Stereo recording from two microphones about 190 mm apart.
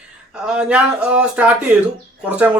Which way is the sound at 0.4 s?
5° right (ahead or behind).